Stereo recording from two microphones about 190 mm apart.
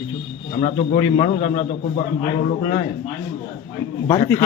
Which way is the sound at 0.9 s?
25° left (ahead or behind).